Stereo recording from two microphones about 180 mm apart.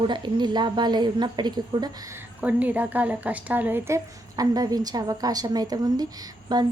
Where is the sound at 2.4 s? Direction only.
10° right (ahead or behind).